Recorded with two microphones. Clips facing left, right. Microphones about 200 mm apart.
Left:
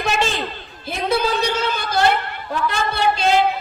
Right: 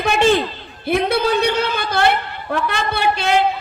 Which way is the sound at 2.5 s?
60° right (ahead or behind).